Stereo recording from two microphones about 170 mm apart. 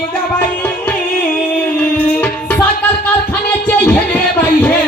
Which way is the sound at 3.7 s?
10° left (ahead or behind).